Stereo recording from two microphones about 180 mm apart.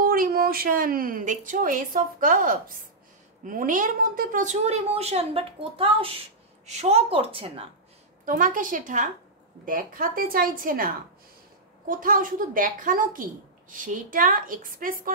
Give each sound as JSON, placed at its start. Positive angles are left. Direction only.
{"t": 0.0, "sound": "a woman's voice", "side_deg": -50}
{"t": 8.3, "sound": "a woman's voice", "side_deg": -50}
{"t": 11.9, "sound": "a woman's voice", "side_deg": -50}